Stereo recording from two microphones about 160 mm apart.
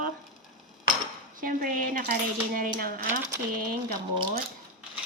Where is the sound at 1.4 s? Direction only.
60° right (ahead or behind).